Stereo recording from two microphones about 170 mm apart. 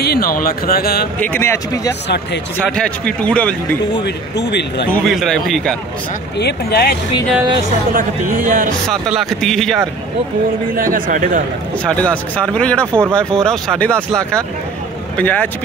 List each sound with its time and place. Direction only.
0.0 s speech: 65° left (ahead or behind)
1.3 s speech: 15° left (ahead or behind)
4.0 s speech: 90° left
4.9 s speech: centre (ahead or behind)
6.4 s speech: 70° left (ahead or behind)
7.9 s speech: 50° right (ahead or behind)
9.0 s speech: centre (ahead or behind)
10.8 s speech: 50° right (ahead or behind)
11.8 s speech: 5° left (ahead or behind)